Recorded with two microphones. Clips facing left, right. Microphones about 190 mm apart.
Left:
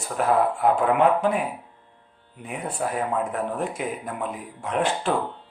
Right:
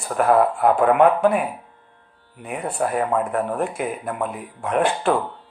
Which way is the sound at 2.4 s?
55° right (ahead or behind).